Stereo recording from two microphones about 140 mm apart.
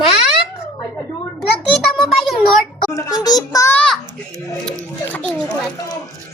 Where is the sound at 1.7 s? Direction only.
Centre (ahead or behind).